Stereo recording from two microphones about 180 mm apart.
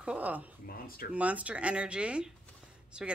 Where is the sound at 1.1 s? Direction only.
5° right (ahead or behind).